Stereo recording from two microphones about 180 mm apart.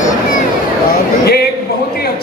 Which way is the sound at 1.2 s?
65° left (ahead or behind).